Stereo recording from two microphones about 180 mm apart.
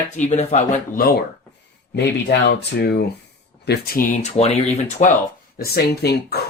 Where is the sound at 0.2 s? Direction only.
40° left (ahead or behind).